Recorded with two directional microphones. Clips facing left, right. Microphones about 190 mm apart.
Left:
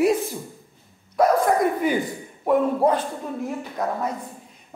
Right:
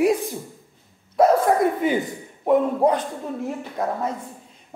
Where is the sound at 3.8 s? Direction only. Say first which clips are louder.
Right 1 dB; 30° right (ahead or behind).